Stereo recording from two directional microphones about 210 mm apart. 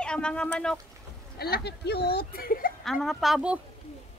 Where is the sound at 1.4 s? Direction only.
50° left (ahead or behind).